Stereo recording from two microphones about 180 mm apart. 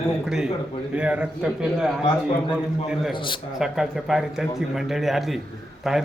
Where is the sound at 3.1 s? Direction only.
25° left (ahead or behind).